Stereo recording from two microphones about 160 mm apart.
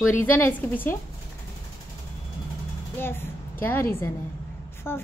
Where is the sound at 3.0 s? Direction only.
15° left (ahead or behind).